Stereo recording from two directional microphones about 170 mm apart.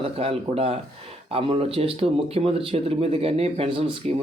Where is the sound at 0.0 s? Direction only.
35° right (ahead or behind).